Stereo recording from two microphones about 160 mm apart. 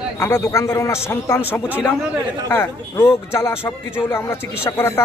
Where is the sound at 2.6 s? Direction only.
15° left (ahead or behind).